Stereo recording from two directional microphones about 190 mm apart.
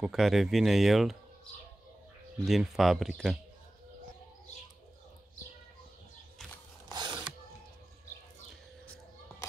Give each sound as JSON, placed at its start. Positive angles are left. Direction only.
{"t": 0.0, "sound": "speech", "side_deg": 0}
{"t": 2.4, "sound": "speech", "side_deg": 0}
{"t": 6.9, "sound": "a sound", "side_deg": -20}